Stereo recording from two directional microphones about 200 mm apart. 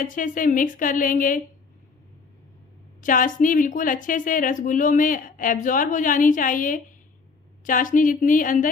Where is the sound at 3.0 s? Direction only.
40° left (ahead or behind).